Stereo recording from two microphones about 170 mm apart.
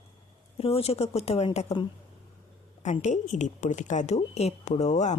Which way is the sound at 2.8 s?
45° left (ahead or behind).